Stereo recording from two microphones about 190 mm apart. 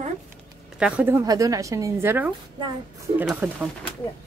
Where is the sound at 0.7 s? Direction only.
5° right (ahead or behind).